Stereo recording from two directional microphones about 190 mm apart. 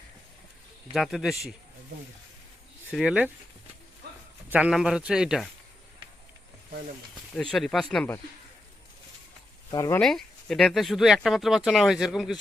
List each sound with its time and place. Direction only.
0.9 s speech: centre (ahead or behind)
2.9 s speech: 5° right (ahead or behind)
4.4 s speech: 10° right (ahead or behind)
7.5 s speech: centre (ahead or behind)
9.7 s speech: 20° left (ahead or behind)
10.0 s speech: centre (ahead or behind)